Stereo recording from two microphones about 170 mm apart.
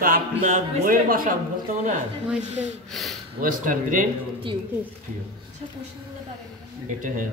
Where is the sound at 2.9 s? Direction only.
Centre (ahead or behind).